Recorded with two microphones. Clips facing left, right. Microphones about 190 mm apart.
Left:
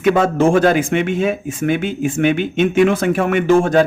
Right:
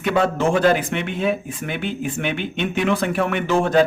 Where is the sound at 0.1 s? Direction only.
45° left (ahead or behind).